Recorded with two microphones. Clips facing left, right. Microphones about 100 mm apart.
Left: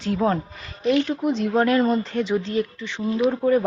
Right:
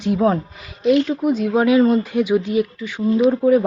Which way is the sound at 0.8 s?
5° right (ahead or behind).